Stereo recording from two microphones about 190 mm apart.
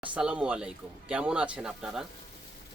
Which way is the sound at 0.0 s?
5° right (ahead or behind).